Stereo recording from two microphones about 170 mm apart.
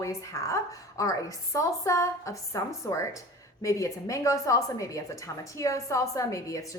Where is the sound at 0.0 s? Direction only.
20° left (ahead or behind).